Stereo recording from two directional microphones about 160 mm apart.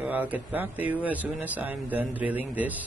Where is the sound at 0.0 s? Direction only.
10° right (ahead or behind).